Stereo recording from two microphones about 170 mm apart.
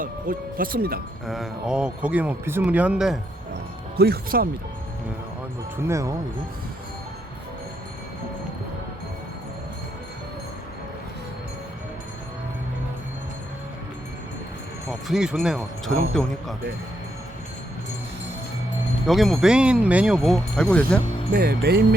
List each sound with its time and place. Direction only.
0.0 s speech: 55° right (ahead or behind)
1.3 s speech: 5° right (ahead or behind)
3.9 s speech: 65° right (ahead or behind)
5.7 s speech: 15° right (ahead or behind)
14.8 s speech: centre (ahead or behind)
19.0 s speech: centre (ahead or behind)
21.3 s speech: 70° right (ahead or behind)